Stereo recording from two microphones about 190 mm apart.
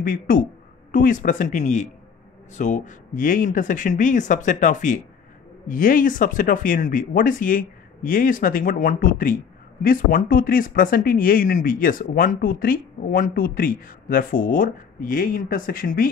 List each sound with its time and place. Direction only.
0.0 s speech: 45° left (ahead or behind)